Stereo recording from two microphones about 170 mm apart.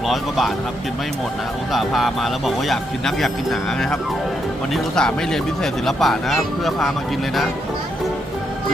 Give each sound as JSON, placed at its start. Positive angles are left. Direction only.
{"t": 0.1, "sound": "speech", "side_deg": 0}
{"t": 1.7, "sound": "speech", "side_deg": 0}